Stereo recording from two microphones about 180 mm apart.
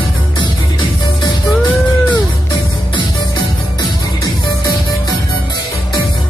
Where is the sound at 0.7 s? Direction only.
25° left (ahead or behind).